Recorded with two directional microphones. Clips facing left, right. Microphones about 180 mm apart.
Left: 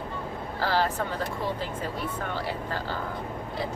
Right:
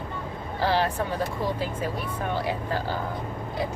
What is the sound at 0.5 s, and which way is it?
Speech, 15° right (ahead or behind).